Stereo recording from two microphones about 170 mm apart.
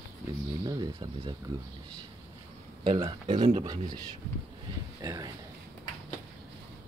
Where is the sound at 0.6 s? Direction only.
25° right (ahead or behind).